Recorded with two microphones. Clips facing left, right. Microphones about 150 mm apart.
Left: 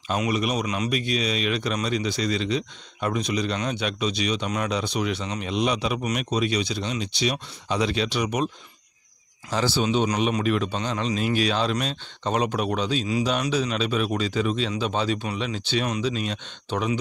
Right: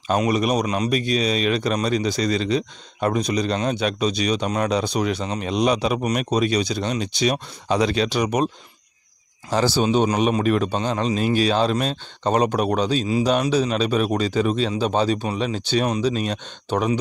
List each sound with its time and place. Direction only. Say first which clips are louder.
0.1 s a man's voice: right 5 dB; 40° right (ahead or behind)
9.5 s a man's voice: right 4 dB; 40° right (ahead or behind)